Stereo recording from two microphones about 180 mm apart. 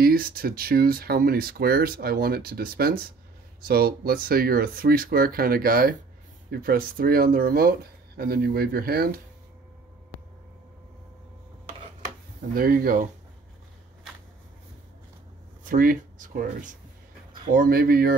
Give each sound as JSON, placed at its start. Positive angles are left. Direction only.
{"t": 0.0, "sound": "speech", "side_deg": -55}
{"t": 12.5, "sound": "speech", "side_deg": -55}
{"t": 15.7, "sound": "speech", "side_deg": -50}